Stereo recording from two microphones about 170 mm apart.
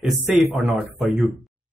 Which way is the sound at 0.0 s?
Centre (ahead or behind).